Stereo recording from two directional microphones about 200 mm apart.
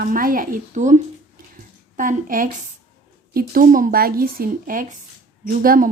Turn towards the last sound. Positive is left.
turn(degrees=-45)  # may be behind; listen again after turning